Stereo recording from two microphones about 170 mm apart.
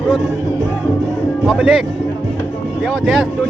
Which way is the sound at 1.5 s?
5° right (ahead or behind).